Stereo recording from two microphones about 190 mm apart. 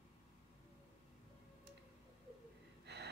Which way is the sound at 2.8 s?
60° right (ahead or behind).